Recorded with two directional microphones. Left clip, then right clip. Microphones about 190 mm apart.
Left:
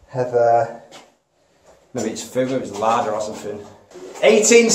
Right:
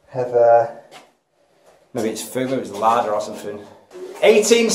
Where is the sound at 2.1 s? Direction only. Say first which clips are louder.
Left 6 dB; 35° right (ahead or behind).